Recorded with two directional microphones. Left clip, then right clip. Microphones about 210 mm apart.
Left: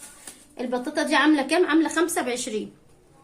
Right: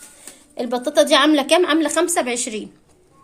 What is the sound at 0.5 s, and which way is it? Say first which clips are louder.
A woman's voice: right 9 dB; 35° right (ahead or behind).